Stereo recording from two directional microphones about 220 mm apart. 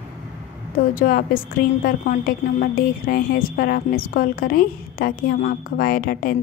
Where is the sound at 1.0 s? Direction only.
40° left (ahead or behind).